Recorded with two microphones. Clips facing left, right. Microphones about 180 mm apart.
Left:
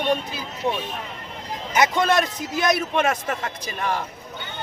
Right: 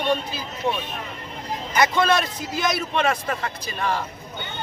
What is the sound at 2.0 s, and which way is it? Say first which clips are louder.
Speech: left 1 dB; 15° left (ahead or behind).